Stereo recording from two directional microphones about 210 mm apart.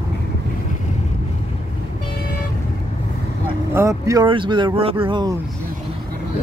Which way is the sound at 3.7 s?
15° right (ahead or behind).